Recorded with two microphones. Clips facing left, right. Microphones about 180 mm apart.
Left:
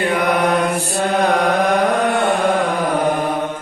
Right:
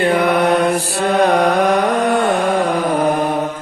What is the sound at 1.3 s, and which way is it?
Mantra, 35° right (ahead or behind).